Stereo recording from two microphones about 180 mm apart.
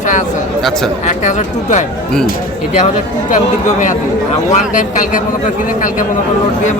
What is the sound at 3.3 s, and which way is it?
A man's voice, 45° left (ahead or behind).